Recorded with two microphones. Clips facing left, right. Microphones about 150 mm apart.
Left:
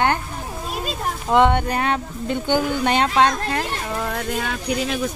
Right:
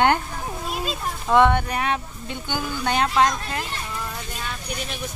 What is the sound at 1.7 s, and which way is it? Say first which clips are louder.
Music: left 3 dB; 35° left (ahead or behind).